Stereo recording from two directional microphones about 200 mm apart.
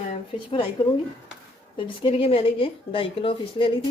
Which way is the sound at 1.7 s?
25° left (ahead or behind).